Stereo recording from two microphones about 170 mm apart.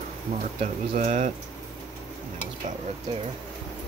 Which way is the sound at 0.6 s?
45° right (ahead or behind).